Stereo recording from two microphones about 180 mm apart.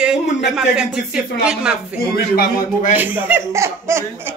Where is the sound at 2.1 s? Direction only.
55° left (ahead or behind).